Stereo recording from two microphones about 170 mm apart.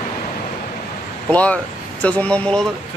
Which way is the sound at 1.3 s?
10° left (ahead or behind).